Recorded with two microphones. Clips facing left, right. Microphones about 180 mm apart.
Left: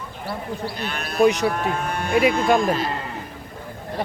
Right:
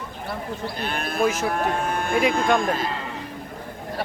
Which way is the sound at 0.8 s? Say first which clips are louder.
Right 1 dB; 50° right (ahead or behind).